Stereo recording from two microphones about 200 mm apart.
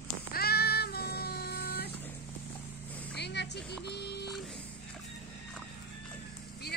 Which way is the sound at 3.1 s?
55° left (ahead or behind).